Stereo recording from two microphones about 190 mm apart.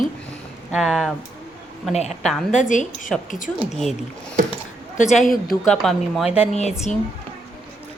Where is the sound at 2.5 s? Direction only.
40° left (ahead or behind).